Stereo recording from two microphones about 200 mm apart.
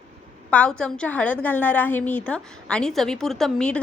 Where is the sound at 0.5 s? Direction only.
5° left (ahead or behind).